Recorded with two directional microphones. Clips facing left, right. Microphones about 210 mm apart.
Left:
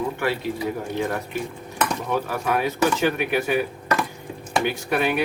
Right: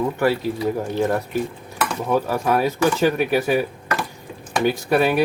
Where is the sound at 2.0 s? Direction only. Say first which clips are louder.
Right 4 dB; 35° right (ahead or behind).